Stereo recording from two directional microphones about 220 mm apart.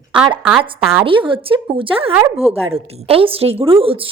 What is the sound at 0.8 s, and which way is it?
Speech, centre (ahead or behind).